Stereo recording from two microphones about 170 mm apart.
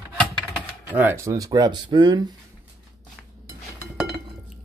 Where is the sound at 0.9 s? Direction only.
10° right (ahead or behind).